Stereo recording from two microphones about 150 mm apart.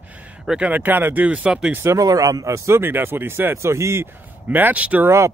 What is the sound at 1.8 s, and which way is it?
Speech, 20° right (ahead or behind).